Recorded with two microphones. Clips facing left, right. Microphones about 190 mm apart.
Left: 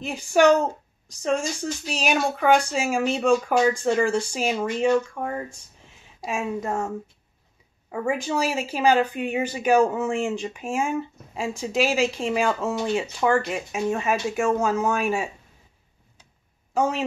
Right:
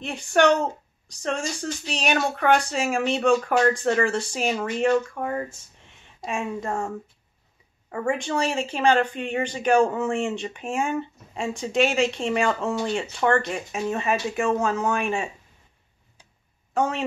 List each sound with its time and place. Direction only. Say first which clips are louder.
0.0 s speech: left 2 dB; centre (ahead or behind)
7.9 s speech: even; 5° left (ahead or behind)
16.7 s a woman's voice: left 1 dB; centre (ahead or behind)